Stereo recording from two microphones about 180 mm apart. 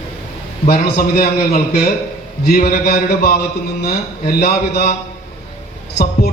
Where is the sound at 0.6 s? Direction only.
55° left (ahead or behind).